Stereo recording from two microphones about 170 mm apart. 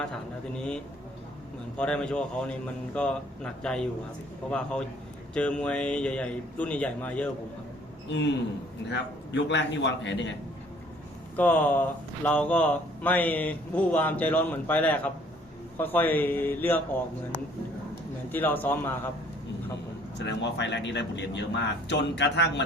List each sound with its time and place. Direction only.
0.0 s speech: 5° left (ahead or behind)
5.3 s speech: 5° left (ahead or behind)
8.9 s speech: 90° left
11.3 s speech: 10° left (ahead or behind)
20.1 s speech: 90° left